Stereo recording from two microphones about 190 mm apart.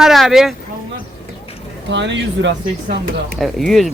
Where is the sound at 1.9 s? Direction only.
70° right (ahead or behind).